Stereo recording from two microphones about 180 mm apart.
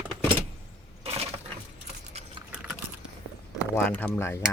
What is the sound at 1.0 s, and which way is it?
Keys jangling, 35° right (ahead or behind).